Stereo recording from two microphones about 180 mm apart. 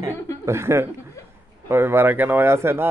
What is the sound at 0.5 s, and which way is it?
Speech, 15° right (ahead or behind).